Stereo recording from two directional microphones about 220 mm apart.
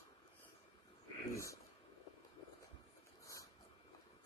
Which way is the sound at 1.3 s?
15° left (ahead or behind).